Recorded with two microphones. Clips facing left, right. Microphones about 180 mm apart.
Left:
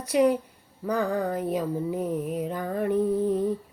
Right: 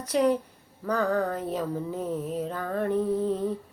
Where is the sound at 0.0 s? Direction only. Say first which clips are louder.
Left 2 dB; 10° left (ahead or behind).